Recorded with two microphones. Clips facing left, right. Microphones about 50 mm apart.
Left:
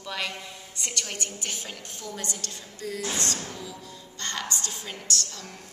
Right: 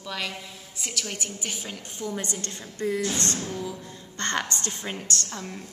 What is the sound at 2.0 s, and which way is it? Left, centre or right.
A woman's voice, right.